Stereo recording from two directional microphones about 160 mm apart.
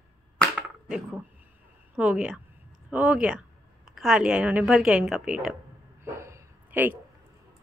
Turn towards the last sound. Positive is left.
turn(degrees=-10)  # may be behind; listen again after turning